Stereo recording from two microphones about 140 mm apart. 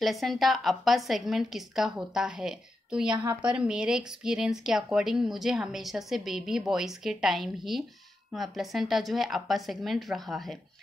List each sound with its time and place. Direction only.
0.0 s speech: centre (ahead or behind)